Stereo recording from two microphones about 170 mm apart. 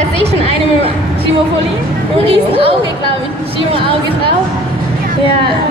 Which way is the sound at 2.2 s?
30° right (ahead or behind).